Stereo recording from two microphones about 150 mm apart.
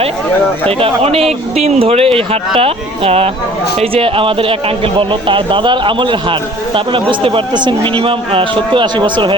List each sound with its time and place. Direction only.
0.8 s a man's voice: 40° right (ahead or behind)